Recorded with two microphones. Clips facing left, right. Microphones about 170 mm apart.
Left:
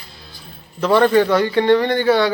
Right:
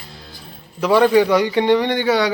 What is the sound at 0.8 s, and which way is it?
A man's voice, 10° right (ahead or behind).